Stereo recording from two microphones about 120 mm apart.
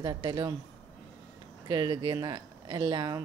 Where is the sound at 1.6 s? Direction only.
35° right (ahead or behind).